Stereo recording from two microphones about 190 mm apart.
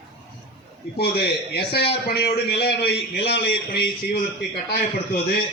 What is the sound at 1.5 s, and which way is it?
A man's voice, 55° left (ahead or behind).